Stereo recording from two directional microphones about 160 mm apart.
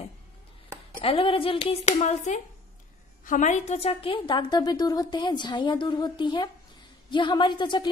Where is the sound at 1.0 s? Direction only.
35° left (ahead or behind).